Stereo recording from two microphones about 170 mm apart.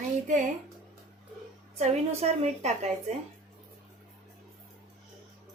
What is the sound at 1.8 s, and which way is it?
A woman's voice, 40° right (ahead or behind).